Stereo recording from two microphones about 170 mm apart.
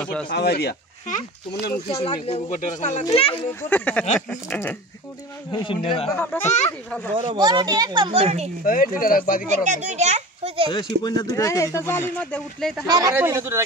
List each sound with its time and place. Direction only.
0.0 s speech: 5° left (ahead or behind)
0.3 s speech: 70° left (ahead or behind)
1.0 s speech: 50° left (ahead or behind)
1.9 s speech: 35° left (ahead or behind)
3.7 s speech: 10° left (ahead or behind)
5.5 s speech: 30° left (ahead or behind)
6.1 s speech: 10° left (ahead or behind)
7.2 s speech: 30° right (ahead or behind)
8.6 s speech: 55° left (ahead or behind)
9.5 s a child's voice: 45° right (ahead or behind)
11.0 s speech: 25° left (ahead or behind); by 12.8 s centre (ahead or behind)
12.8 s speech: 20° right (ahead or behind)